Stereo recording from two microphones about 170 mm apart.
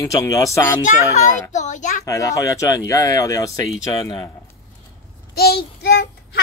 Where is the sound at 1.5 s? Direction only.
45° left (ahead or behind).